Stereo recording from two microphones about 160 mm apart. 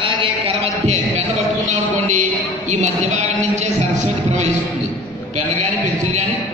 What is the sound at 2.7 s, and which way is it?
A man's voice, 45° right (ahead or behind).